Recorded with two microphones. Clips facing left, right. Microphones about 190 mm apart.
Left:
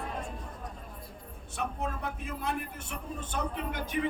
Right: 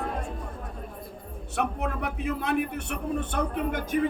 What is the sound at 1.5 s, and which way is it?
A man's voice, 65° right (ahead or behind).